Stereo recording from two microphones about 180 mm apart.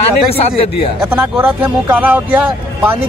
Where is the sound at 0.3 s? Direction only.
30° left (ahead or behind).